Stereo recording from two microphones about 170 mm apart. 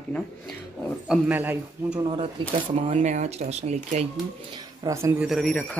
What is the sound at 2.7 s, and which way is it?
Speech, 40° right (ahead or behind).